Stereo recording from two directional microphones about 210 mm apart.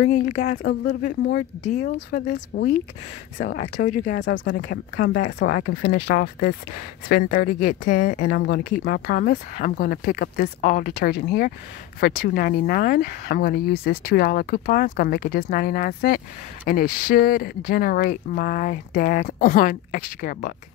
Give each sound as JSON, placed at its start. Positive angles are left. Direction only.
{"t": 0.0, "sound": "speech", "side_deg": 35}
{"t": 0.5, "sound": "speech", "side_deg": 55}
{"t": 1.0, "sound": "speech", "side_deg": 35}
{"t": 2.0, "sound": "speech", "side_deg": 45}
{"t": 4.2, "sound": "speech", "side_deg": 55}
{"t": 4.6, "sound": "speech", "side_deg": 40}
{"t": 8.3, "sound": "speech", "side_deg": 55}